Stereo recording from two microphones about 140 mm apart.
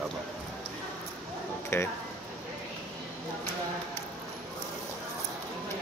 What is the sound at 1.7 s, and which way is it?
Speech, 20° left (ahead or behind).